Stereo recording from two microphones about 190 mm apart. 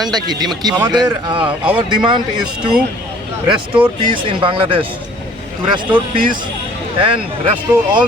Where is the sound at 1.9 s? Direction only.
25° right (ahead or behind).